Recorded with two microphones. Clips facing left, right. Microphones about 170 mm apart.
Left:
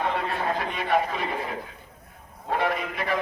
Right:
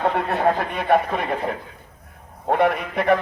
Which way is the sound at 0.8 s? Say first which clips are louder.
Right 5 dB; 55° right (ahead or behind).